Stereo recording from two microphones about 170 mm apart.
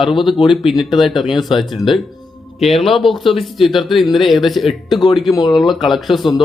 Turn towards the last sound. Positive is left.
turn(degrees=0)  # may be behind; listen again after turning